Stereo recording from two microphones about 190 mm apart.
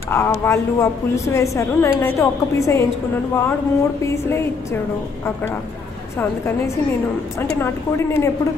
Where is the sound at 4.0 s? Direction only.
15° left (ahead or behind).